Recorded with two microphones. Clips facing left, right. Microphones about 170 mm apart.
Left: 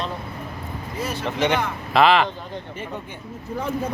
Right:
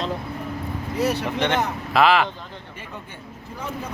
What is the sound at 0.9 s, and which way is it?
Speech, 70° right (ahead or behind).